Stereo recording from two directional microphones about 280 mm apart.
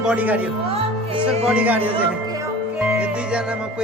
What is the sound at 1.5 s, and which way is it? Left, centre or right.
Speech, centre.